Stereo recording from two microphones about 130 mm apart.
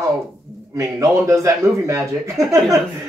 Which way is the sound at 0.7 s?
25° right (ahead or behind).